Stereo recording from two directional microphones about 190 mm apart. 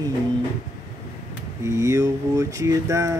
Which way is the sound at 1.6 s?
15° right (ahead or behind).